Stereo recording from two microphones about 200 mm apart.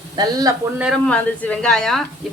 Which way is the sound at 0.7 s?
Centre (ahead or behind).